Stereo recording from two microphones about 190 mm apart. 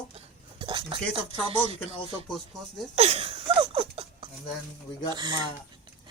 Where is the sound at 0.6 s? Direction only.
25° right (ahead or behind).